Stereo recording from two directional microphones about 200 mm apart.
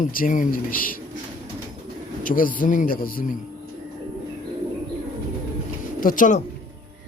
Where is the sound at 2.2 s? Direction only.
45° left (ahead or behind).